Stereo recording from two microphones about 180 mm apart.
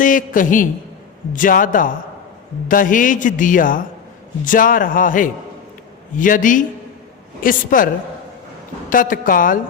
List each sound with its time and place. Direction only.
0.0 s a man's voice: 50° left (ahead or behind)
8.9 s a man's voice: 50° left (ahead or behind)